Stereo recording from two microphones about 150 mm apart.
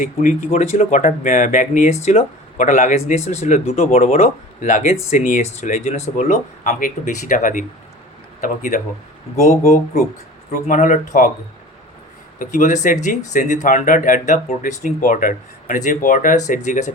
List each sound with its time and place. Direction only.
0.0 s speech: 55° left (ahead or behind)
12.4 s speech: 60° left (ahead or behind)